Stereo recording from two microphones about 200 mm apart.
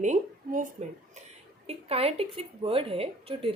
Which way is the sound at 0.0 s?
40° right (ahead or behind).